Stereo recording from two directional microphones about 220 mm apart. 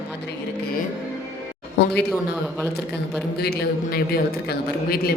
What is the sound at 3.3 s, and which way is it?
Speech, 45° left (ahead or behind).